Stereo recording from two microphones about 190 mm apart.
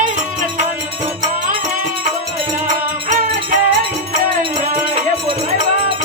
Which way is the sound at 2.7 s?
45° right (ahead or behind).